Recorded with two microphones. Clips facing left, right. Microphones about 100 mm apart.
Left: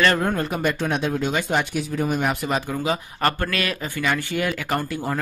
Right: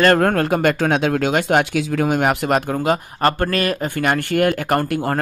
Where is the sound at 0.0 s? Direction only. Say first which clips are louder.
Right 6 dB; 60° right (ahead or behind).